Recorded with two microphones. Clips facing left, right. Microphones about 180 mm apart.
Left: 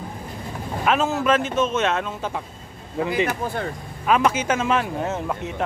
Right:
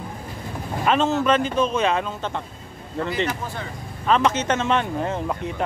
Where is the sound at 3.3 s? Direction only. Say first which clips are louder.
Left 3 dB; 55° left (ahead or behind).